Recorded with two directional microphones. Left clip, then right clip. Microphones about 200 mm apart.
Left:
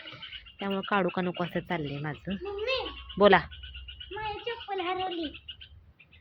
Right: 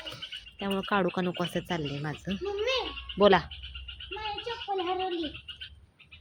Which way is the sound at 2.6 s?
60° right (ahead or behind).